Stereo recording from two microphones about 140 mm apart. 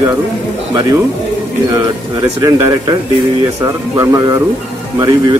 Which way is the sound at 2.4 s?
25° right (ahead or behind).